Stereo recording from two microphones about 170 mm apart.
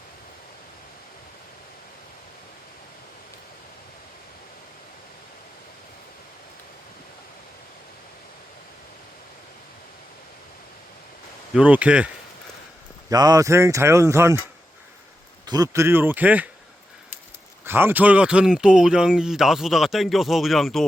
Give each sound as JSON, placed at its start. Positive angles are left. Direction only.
{"t": 11.5, "sound": "speech", "side_deg": -10}
{"t": 13.1, "sound": "speech", "side_deg": -20}
{"t": 15.4, "sound": "speech", "side_deg": -20}
{"t": 17.7, "sound": "speech", "side_deg": -15}